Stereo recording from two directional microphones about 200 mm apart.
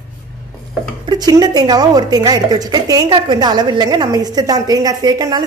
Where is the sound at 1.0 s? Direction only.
20° right (ahead or behind).